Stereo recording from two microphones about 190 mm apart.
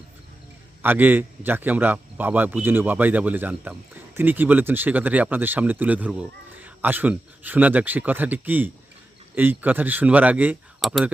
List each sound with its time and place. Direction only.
0.8 s a man's voice: 10° right (ahead or behind)